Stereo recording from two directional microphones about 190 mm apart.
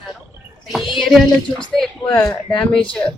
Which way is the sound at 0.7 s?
Centre (ahead or behind).